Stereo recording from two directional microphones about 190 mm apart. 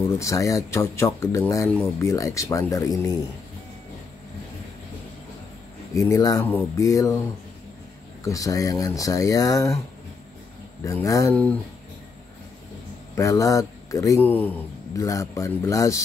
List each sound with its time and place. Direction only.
0.1 s speech: 15° left (ahead or behind)
5.9 s speech: 15° left (ahead or behind)
10.8 s speech: 15° left (ahead or behind)
13.1 s speech: 15° left (ahead or behind)